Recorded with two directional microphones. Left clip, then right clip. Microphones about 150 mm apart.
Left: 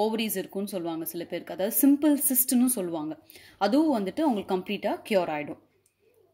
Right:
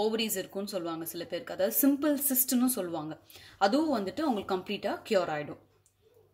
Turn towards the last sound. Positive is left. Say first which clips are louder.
# left 3 dB
turn(degrees=25)  # may be behind; listen again after turning